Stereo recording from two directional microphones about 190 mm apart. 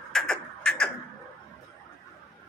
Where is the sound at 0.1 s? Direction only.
5° left (ahead or behind).